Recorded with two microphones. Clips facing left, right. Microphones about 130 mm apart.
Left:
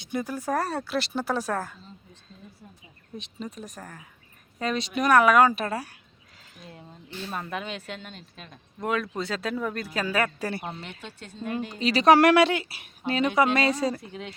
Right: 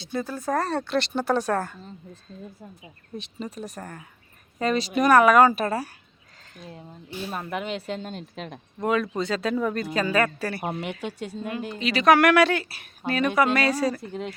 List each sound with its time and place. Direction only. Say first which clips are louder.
0.0 s speech: right 1 dB; 15° left (ahead or behind); by 1.8 s centre (ahead or behind)
3.2 s speech: right 3 dB; centre (ahead or behind); by 7.9 s 20° right (ahead or behind)
7.9 s speech: right 7 dB; 35° right (ahead or behind)
8.8 s speech: right 4 dB; centre (ahead or behind)
10.6 s speech: right 7 dB; 55° right (ahead or behind)
11.0 s speech: right 5 dB; 10° right (ahead or behind)
11.7 s speech: left 1 dB; 35° left (ahead or behind)